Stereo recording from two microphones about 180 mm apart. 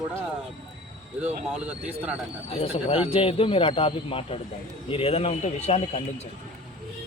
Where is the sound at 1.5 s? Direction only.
5° right (ahead or behind).